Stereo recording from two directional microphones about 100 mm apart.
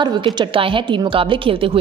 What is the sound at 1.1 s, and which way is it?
Speech, 65° right (ahead or behind).